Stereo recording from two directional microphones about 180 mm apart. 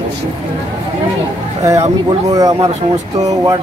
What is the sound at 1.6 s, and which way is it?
Speech, 20° right (ahead or behind).